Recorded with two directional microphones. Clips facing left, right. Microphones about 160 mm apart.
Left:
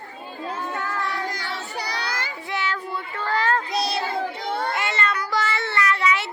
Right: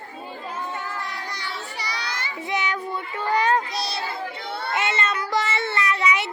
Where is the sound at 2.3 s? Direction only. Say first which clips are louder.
Right 5 dB; 20° right (ahead or behind).